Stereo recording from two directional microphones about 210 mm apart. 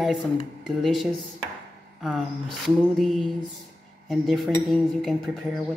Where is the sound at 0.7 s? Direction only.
Centre (ahead or behind).